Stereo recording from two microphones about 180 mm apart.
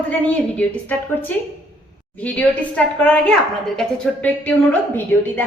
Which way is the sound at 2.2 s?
10° left (ahead or behind).